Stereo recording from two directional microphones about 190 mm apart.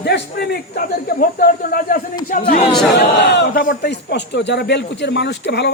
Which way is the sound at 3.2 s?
65° left (ahead or behind).